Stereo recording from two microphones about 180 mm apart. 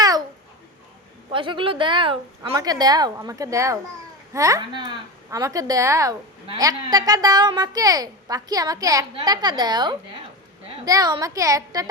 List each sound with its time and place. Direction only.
1.3 s a woman's voice: 25° right (ahead or behind)